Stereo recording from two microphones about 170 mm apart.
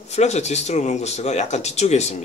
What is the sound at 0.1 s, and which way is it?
Speech, 40° left (ahead or behind).